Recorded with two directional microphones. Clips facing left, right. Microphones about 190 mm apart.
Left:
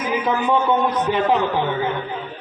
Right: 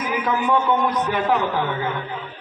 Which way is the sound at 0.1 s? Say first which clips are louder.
Left 2 dB; 25° left (ahead or behind).